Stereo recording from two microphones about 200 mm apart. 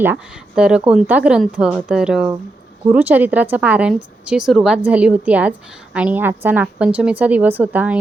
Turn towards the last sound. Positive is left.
turn(degrees=-10)  # may be behind; listen again after turning